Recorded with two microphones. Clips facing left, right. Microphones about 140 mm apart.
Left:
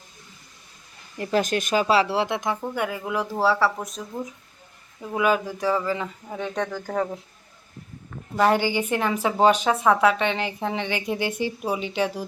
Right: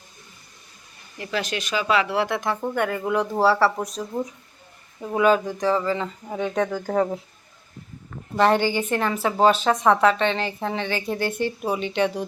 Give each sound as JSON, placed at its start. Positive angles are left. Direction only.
{"t": 1.2, "sound": "speech", "side_deg": 45}
{"t": 2.7, "sound": "speech", "side_deg": 5}
{"t": 5.1, "sound": "a woman's voice", "side_deg": 10}
{"t": 6.2, "sound": "speech", "side_deg": -10}
{"t": 8.4, "sound": "a woman's voice", "side_deg": 10}